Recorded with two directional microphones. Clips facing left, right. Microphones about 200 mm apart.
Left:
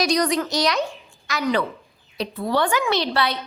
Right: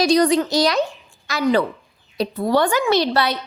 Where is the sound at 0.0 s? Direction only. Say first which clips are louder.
Right 5 dB; 30° right (ahead or behind).